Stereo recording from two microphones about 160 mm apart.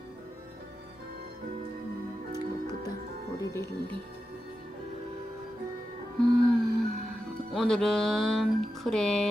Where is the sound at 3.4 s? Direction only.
20° left (ahead or behind).